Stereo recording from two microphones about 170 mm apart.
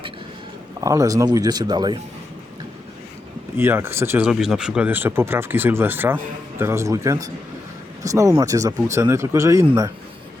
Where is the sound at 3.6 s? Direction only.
15° right (ahead or behind).